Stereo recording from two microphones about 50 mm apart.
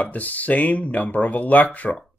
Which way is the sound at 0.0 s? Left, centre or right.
Left.